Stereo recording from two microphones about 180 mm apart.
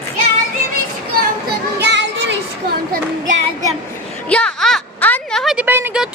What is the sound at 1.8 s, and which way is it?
Child singing, 75° right (ahead or behind).